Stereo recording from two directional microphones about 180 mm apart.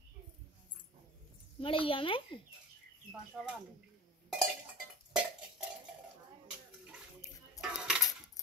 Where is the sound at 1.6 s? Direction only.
30° left (ahead or behind).